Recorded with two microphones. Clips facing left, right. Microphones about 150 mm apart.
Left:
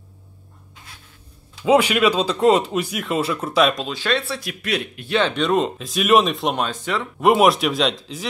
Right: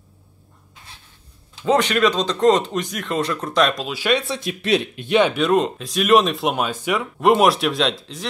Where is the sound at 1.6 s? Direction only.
10° left (ahead or behind); by 5.4 s 15° right (ahead or behind).